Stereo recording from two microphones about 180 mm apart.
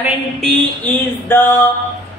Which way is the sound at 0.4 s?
5° left (ahead or behind).